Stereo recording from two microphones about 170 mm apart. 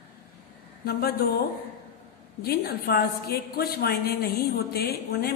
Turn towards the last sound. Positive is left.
turn(degrees=65)  # may be behind; listen again after turning